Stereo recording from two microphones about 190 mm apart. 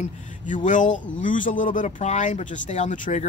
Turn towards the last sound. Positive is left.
turn(degrees=40)  # may be behind; listen again after turning